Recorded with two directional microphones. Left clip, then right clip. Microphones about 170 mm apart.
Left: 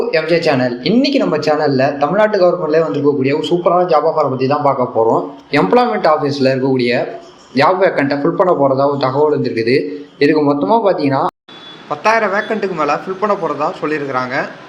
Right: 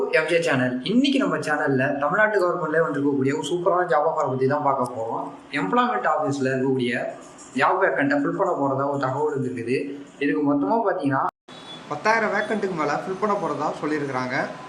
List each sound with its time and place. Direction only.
0.1 s a man's voice: 25° left (ahead or behind)
5.5 s a man's voice: 35° left (ahead or behind); by 14.4 s 15° left (ahead or behind)